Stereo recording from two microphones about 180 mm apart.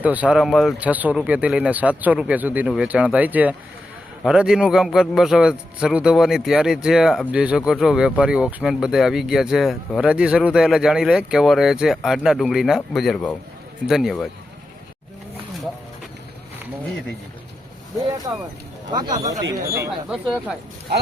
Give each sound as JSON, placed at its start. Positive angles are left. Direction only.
{"t": 0.0, "sound": "a man's voice", "side_deg": -10}
{"t": 18.3, "sound": "speech", "side_deg": -20}